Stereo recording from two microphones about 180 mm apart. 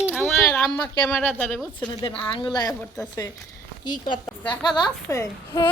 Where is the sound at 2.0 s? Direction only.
30° left (ahead or behind).